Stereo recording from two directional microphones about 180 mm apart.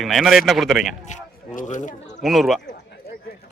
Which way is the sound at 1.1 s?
45° left (ahead or behind).